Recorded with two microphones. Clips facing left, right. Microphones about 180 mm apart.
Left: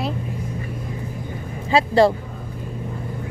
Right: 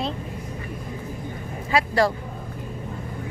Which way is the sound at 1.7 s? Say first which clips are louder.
Left 5 dB; 25° left (ahead or behind).